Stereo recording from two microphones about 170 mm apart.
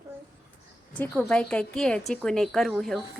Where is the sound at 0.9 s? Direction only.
5° left (ahead or behind).